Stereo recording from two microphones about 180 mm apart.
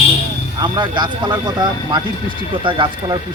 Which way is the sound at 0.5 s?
25° right (ahead or behind).